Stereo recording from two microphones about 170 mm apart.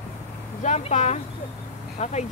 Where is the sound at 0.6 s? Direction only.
40° left (ahead or behind).